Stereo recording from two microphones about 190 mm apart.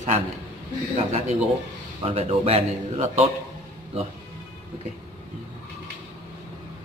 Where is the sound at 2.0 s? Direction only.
30° right (ahead or behind).